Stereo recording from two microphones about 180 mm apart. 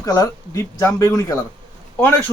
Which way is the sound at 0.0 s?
20° left (ahead or behind).